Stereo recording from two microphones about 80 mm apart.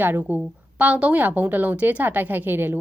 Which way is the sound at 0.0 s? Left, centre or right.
Right.